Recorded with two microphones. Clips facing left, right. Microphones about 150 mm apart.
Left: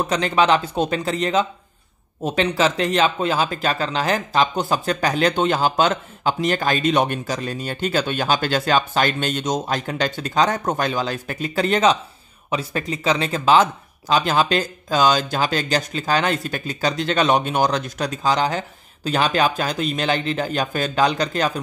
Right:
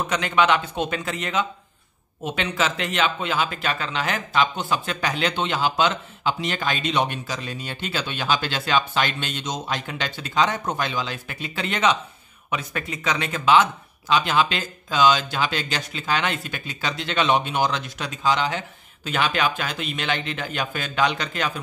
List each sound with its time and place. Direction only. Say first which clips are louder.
0.0 s speech: left 3 dB; 35° left (ahead or behind)